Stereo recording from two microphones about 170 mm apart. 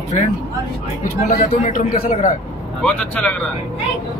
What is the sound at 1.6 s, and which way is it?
Speech, 50° left (ahead or behind).